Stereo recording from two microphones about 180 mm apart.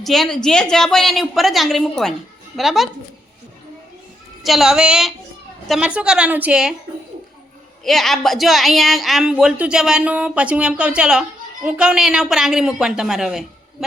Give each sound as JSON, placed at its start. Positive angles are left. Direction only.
{"t": 0.0, "sound": "a woman's voice", "side_deg": 0}
{"t": 4.4, "sound": "a woman's voice", "side_deg": 0}
{"t": 7.9, "sound": "a woman's voice", "side_deg": 0}